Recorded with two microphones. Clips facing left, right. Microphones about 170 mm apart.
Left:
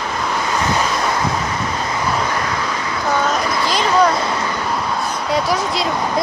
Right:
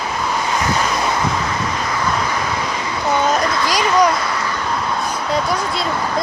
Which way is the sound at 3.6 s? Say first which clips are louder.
Left 1 dB; 10° right (ahead or behind).